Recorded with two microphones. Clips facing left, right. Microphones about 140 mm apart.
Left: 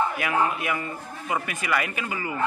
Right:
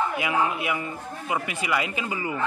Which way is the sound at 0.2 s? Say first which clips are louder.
Even; 15° right (ahead or behind).